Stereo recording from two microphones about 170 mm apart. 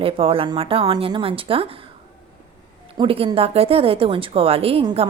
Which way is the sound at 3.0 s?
35° right (ahead or behind).